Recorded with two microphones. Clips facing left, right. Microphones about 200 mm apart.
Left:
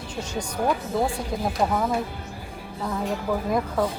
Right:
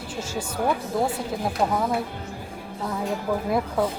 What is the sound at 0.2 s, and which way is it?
Speech, 5° right (ahead or behind).